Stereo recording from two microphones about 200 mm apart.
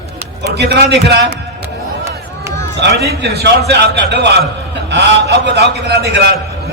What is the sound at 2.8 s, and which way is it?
A man's voice, 55° right (ahead or behind).